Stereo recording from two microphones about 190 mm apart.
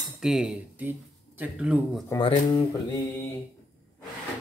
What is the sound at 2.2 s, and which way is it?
Speech, 25° left (ahead or behind).